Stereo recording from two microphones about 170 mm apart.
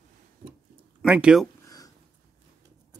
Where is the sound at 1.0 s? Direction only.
5° right (ahead or behind).